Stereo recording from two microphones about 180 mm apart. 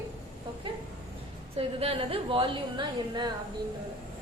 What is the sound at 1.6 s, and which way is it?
A woman's voice, 35° right (ahead or behind).